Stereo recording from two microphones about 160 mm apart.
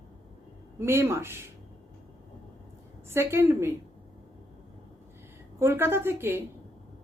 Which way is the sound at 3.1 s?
15° right (ahead or behind).